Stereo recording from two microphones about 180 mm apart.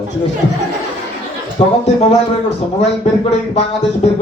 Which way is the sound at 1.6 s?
35° left (ahead or behind).